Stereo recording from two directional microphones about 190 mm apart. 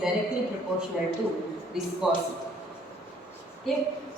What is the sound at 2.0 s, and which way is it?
Speech, centre (ahead or behind).